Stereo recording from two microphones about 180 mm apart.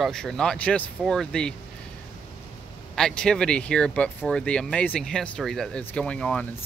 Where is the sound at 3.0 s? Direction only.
5° left (ahead or behind).